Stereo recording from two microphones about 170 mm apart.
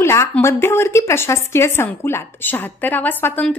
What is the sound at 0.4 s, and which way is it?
A woman's voice, 15° left (ahead or behind).